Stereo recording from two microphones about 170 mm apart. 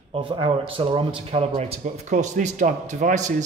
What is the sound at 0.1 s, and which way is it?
Speech, 30° right (ahead or behind).